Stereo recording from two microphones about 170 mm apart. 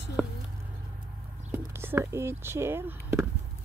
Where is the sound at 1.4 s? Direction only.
15° right (ahead or behind).